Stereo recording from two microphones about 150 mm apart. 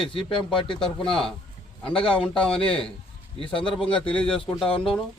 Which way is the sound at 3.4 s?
35° left (ahead or behind).